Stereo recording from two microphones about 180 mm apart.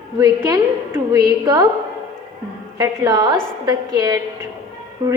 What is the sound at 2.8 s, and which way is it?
A woman's voice, 20° right (ahead or behind).